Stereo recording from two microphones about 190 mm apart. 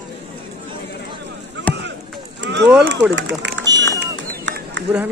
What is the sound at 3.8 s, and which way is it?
Run, 65° right (ahead or behind).